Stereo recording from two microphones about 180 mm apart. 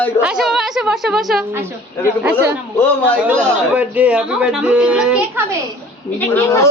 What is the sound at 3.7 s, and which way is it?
Speech, 10° right (ahead or behind).